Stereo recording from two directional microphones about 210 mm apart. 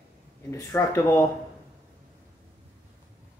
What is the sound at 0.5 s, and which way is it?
Speech, 15° left (ahead or behind).